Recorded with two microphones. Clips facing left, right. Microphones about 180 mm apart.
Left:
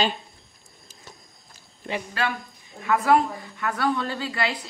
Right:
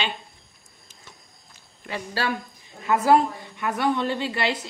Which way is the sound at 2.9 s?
20° right (ahead or behind).